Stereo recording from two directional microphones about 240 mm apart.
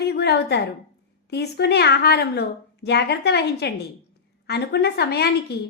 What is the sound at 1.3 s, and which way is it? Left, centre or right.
A woman's voice, left.